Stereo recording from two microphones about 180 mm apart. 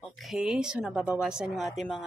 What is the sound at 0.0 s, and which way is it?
Speech, 5° right (ahead or behind).